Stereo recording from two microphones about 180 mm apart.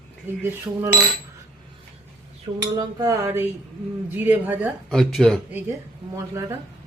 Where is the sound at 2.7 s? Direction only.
20° right (ahead or behind).